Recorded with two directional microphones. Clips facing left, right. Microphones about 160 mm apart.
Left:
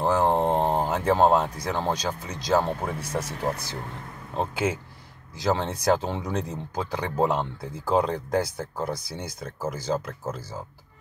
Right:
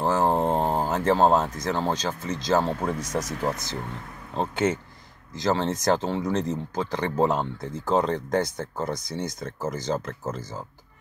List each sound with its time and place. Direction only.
0.1 s speech: 15° left (ahead or behind)
3.2 s speech: 30° left (ahead or behind)
4.4 s speech: 10° left (ahead or behind)